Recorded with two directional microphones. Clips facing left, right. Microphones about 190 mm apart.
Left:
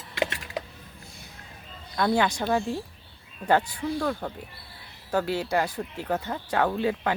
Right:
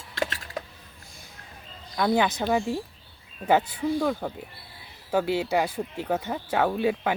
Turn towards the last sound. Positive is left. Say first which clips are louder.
# right 1 dB
turn(degrees=-15)  # may be behind; listen again after turning